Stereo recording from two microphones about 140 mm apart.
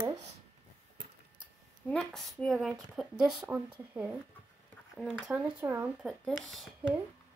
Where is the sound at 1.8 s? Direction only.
5° left (ahead or behind).